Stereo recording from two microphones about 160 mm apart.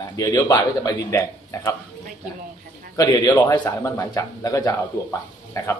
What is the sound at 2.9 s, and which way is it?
A man's voice, 20° left (ahead or behind).